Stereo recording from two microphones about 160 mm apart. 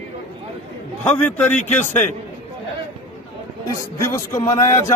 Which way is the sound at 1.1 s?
10° left (ahead or behind).